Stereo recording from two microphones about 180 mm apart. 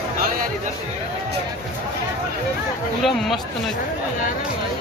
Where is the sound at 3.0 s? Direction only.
Centre (ahead or behind).